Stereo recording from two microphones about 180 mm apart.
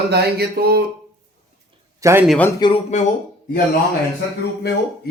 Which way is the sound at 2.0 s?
15° right (ahead or behind).